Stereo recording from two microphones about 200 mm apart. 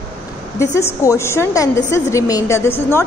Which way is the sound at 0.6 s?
15° left (ahead or behind).